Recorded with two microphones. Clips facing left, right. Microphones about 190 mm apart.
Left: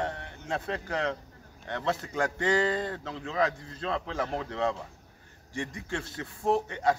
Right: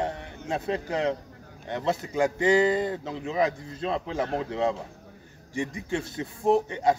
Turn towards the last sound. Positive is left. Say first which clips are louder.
# right 4 dB
turn(degrees=-15)  # may be behind; listen again after turning